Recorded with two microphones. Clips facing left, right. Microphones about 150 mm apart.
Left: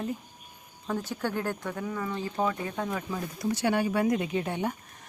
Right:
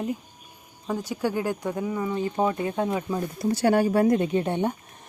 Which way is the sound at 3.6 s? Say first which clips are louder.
Right 6 dB; 40° right (ahead or behind).